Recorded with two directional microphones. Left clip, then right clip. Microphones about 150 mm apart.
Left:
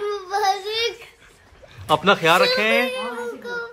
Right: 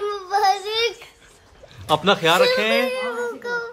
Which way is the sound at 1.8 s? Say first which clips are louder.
Left 1 dB; 15° right (ahead or behind).